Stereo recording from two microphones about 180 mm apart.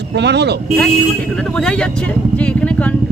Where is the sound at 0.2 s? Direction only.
70° right (ahead or behind).